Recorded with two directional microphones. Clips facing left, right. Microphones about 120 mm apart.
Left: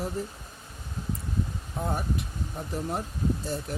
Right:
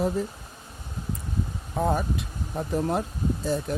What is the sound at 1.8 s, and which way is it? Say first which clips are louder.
Speech: right 5 dB; 90° right.